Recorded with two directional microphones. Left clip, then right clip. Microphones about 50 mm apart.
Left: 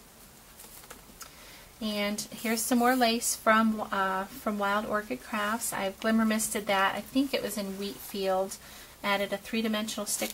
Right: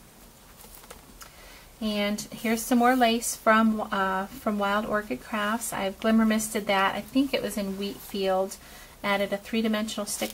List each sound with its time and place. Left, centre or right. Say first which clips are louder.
1.8 s speech: right 3 dB; left